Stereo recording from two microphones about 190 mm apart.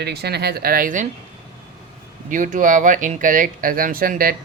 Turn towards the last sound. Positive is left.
turn(degrees=-50)  # may be behind; listen again after turning